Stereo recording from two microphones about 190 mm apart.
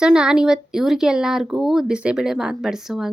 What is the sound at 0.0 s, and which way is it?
Speech, 5° right (ahead or behind).